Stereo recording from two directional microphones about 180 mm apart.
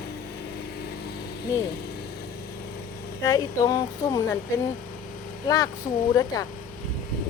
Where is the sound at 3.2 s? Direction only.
20° left (ahead or behind).